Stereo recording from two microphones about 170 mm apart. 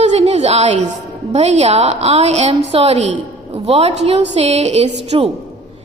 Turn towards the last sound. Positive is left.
turn(degrees=-35)  # may be behind; listen again after turning